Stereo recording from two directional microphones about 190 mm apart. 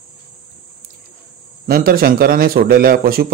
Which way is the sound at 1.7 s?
50° right (ahead or behind).